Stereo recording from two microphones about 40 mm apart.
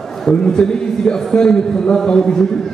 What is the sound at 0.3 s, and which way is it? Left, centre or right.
A man's voice, centre.